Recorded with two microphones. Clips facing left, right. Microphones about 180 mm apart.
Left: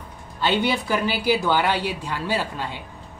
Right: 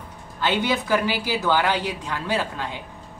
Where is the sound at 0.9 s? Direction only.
15° left (ahead or behind).